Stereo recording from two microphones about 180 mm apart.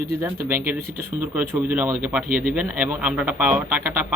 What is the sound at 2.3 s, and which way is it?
Speech, 50° right (ahead or behind).